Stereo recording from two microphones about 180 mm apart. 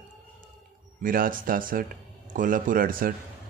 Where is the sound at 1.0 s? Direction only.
50° right (ahead or behind).